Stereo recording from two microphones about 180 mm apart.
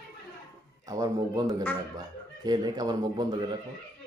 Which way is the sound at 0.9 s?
20° right (ahead or behind).